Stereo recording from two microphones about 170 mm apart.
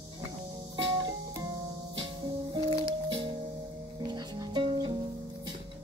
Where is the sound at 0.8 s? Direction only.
25° right (ahead or behind).